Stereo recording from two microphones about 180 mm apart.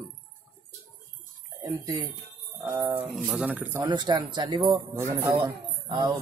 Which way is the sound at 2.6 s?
10° right (ahead or behind).